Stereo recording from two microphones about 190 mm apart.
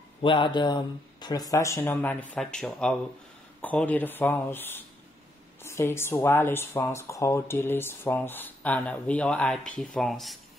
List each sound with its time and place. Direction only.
0.2 s speech: 25° left (ahead or behind); by 10.4 s centre (ahead or behind)